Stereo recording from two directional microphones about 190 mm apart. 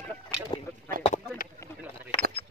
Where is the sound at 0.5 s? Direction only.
25° left (ahead or behind).